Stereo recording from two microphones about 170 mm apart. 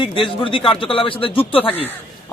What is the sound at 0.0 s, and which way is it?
Speech, 30° left (ahead or behind).